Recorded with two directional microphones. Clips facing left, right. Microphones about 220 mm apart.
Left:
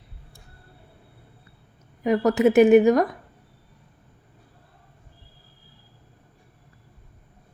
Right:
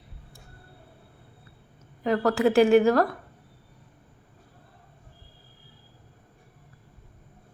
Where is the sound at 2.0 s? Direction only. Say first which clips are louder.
Left 3 dB; 20° left (ahead or behind).